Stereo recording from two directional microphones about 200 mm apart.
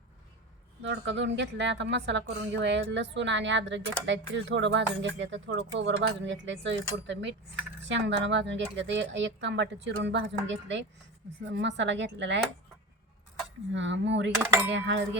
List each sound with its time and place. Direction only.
0.8 s speech: 60° right (ahead or behind)
13.7 s speech: 65° right (ahead or behind)